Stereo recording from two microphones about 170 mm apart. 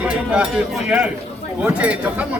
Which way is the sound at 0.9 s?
5° right (ahead or behind).